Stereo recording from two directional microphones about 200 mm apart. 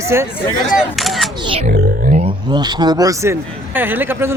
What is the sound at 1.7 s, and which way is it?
Music, 45° right (ahead or behind).